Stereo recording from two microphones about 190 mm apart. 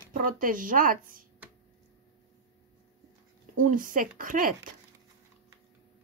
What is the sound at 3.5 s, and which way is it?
Speech, 45° right (ahead or behind).